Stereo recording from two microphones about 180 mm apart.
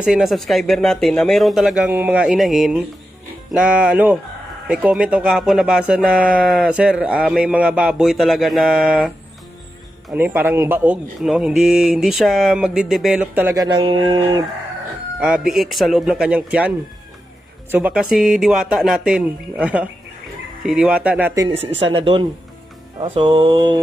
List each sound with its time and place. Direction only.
0.0 s speech: centre (ahead or behind)
3.5 s music: 5° right (ahead or behind)
4.6 s speech: 5° right (ahead or behind)
10.1 s speech: 10° right (ahead or behind)
13.7 s music: 30° right (ahead or behind)
15.1 s speech: 5° right (ahead or behind)
17.6 s music: 10° right (ahead or behind)
18.3 s speech: centre (ahead or behind)
21.5 s speech: 35° right (ahead or behind)
23.0 s music: 30° right (ahead or behind)